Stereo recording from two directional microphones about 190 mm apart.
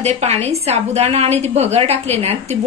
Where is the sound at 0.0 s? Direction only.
35° right (ahead or behind).